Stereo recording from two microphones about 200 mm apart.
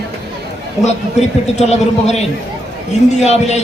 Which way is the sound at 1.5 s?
35° left (ahead or behind).